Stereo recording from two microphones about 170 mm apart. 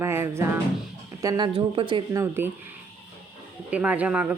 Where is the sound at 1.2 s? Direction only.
30° right (ahead or behind).